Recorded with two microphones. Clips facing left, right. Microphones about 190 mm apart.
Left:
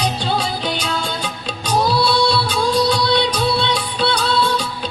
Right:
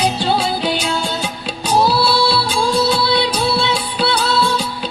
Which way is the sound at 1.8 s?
5° right (ahead or behind).